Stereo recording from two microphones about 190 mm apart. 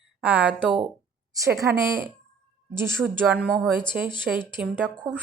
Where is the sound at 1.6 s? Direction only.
15° right (ahead or behind).